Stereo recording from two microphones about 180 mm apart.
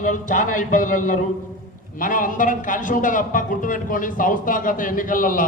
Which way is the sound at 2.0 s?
50° left (ahead or behind).